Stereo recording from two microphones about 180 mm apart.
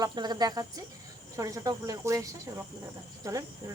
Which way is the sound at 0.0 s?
20° right (ahead or behind).